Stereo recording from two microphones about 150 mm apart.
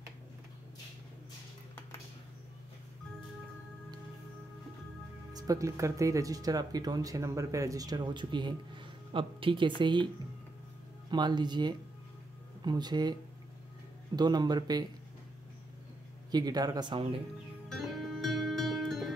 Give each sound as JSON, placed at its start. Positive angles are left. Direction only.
{"t": 5.3, "sound": "speech", "side_deg": -20}
{"t": 11.1, "sound": "speech", "side_deg": -30}
{"t": 14.1, "sound": "speech", "side_deg": -30}
{"t": 16.3, "sound": "speech", "side_deg": -25}
{"t": 17.6, "sound": "music", "side_deg": 0}